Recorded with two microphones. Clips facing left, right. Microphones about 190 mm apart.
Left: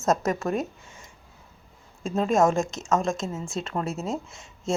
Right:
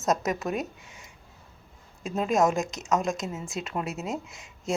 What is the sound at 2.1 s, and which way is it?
A woman's voice, 5° right (ahead or behind).